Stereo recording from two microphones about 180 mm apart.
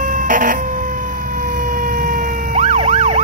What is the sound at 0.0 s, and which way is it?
Emergency vehicle, 45° right (ahead or behind).